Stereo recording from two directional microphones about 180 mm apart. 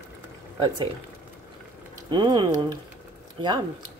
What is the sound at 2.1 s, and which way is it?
Speech, 25° right (ahead or behind).